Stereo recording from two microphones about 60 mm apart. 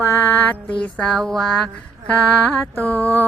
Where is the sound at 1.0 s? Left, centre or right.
Centre.